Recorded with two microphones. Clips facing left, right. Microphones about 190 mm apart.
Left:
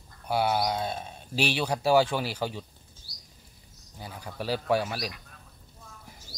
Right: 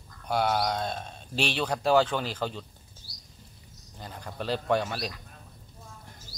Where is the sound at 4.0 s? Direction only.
10° left (ahead or behind).